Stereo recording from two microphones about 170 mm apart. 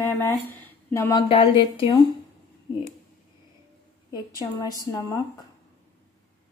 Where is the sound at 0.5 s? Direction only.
15° left (ahead or behind).